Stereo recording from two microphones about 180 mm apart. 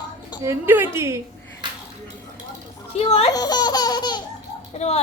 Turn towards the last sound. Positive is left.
turn(degrees=35)  # may be behind; listen again after turning